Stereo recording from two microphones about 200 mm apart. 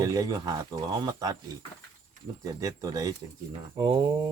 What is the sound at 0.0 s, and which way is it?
Speech, 20° right (ahead or behind).